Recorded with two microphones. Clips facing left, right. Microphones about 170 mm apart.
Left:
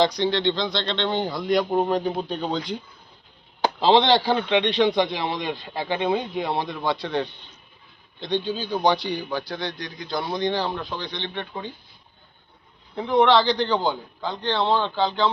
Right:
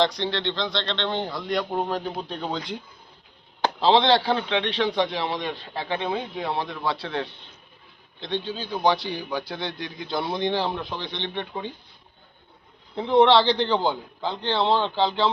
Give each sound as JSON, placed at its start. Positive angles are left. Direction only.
{"t": 0.0, "sound": "speech", "side_deg": 0}
{"t": 4.4, "sound": "a man's voice", "side_deg": 10}
{"t": 9.3, "sound": "speech", "side_deg": -20}
{"t": 13.0, "sound": "speech", "side_deg": -30}